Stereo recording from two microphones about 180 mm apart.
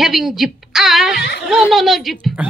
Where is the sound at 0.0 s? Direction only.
Centre (ahead or behind).